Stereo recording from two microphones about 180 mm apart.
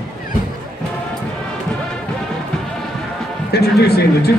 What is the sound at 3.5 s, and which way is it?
Music, 65° left (ahead or behind).